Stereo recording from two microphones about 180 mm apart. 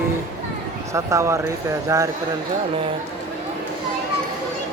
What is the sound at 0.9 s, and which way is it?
Speech, 15° right (ahead or behind).